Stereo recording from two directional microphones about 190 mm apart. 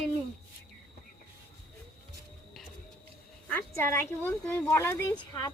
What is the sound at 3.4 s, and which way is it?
A woman's voice, 10° left (ahead or behind).